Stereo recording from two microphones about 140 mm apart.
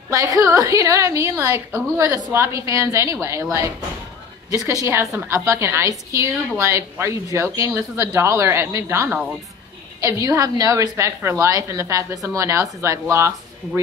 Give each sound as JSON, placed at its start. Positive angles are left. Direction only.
{"t": 0.1, "sound": "a woman's voice", "side_deg": -25}
{"t": 4.5, "sound": "a woman's voice", "side_deg": -25}